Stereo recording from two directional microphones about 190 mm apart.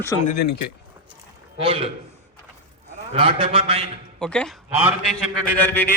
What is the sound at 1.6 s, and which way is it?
Speech, 30° right (ahead or behind).